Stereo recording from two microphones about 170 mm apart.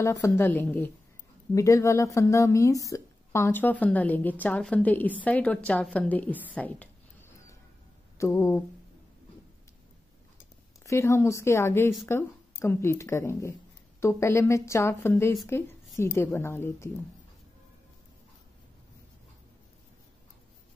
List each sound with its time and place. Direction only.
0.0 s a woman's voice: 15° left (ahead or behind)
6.5 s a sound: 10° left (ahead or behind)
8.2 s a woman's voice: 15° left (ahead or behind)
10.9 s a woman's voice: 15° left (ahead or behind)